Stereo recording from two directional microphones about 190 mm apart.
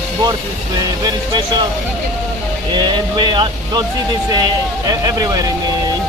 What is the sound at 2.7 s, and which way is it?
Speech, 25° right (ahead or behind).